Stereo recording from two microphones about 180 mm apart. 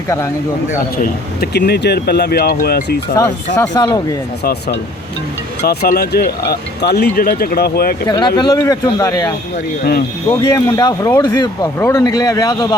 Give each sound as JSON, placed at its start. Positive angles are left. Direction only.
{"t": 1.0, "sound": "speech", "side_deg": 65}
{"t": 3.2, "sound": "speech", "side_deg": 20}
{"t": 5.6, "sound": "speech", "side_deg": 60}
{"t": 8.0, "sound": "speech", "side_deg": 25}
{"t": 10.5, "sound": "speech", "side_deg": 20}